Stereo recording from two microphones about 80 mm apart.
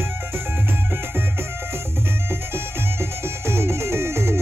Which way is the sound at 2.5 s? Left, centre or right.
Right.